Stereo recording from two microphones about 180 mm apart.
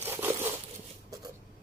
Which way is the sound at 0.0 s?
10° right (ahead or behind).